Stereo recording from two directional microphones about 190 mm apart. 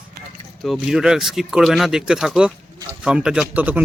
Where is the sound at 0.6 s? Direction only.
Centre (ahead or behind).